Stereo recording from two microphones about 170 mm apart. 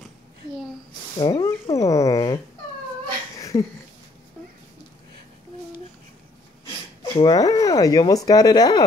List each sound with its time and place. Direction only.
1.1 s speech: 25° left (ahead or behind)
3.3 s a sound: 20° left (ahead or behind)
7.2 s speech: 25° left (ahead or behind)